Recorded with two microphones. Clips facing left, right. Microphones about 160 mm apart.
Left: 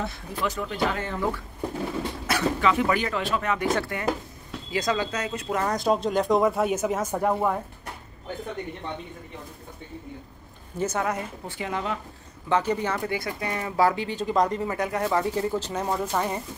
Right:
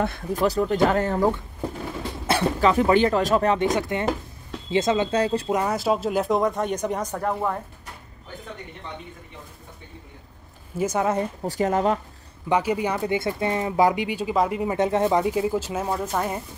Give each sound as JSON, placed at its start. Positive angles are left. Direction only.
{"t": 0.0, "sound": "speech", "side_deg": -50}
{"t": 3.5, "sound": "speech", "side_deg": -20}
{"t": 5.5, "sound": "speech", "side_deg": -10}
{"t": 10.8, "sound": "speech", "side_deg": -10}
{"t": 11.1, "sound": "speech", "side_deg": -35}
{"t": 12.4, "sound": "speech", "side_deg": -10}
{"t": 14.7, "sound": "speech", "side_deg": -25}